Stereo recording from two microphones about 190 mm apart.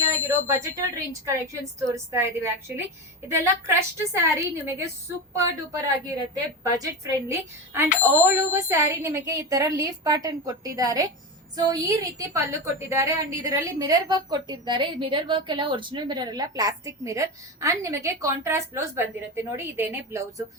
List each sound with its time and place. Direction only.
0.1 s a woman's voice: 15° right (ahead or behind)